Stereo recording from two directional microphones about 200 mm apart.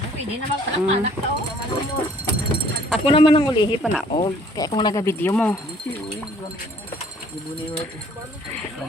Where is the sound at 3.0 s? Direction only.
25° left (ahead or behind); by 5.5 s 10° left (ahead or behind).